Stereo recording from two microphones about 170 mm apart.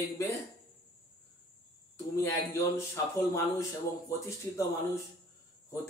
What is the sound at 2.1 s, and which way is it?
Speech, 15° left (ahead or behind).